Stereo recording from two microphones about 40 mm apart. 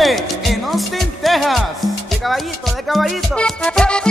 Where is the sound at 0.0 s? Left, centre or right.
Centre.